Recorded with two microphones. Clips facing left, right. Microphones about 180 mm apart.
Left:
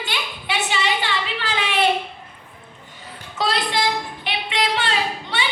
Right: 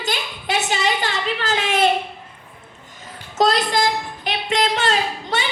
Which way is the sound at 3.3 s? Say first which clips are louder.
Right 5 dB; 45° right (ahead or behind).